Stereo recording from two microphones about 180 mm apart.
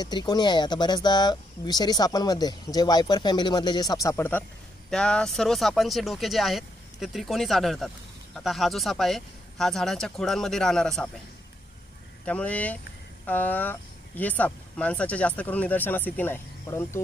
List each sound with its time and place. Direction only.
0.0 s speech: 25° left (ahead or behind); by 11.1 s 5° left (ahead or behind)
12.3 s speech: 10° left (ahead or behind)